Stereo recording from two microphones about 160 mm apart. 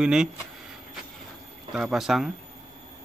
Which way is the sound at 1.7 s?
5° right (ahead or behind).